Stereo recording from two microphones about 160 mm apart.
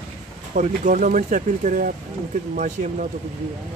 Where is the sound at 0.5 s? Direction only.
55° right (ahead or behind).